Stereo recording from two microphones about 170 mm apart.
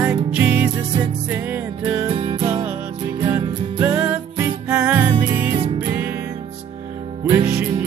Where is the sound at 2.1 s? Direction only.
30° right (ahead or behind).